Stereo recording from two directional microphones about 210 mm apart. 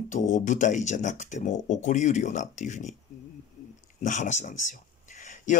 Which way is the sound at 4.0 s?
35° left (ahead or behind).